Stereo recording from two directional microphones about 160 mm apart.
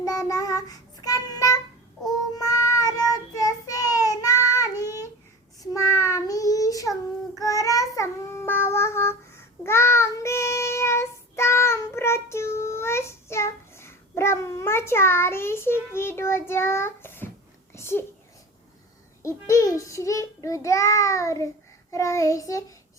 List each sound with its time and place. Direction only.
0.0 s child singing: 20° left (ahead or behind)
5.7 s child singing: 20° left (ahead or behind)
17.7 s a sound: 15° left (ahead or behind)
19.2 s child singing: 20° left (ahead or behind)